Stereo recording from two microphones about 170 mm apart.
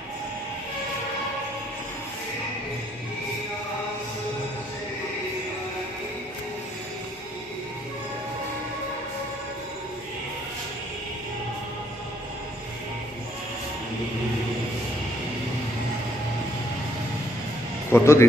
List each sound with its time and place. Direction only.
17.9 s speech: 15° left (ahead or behind)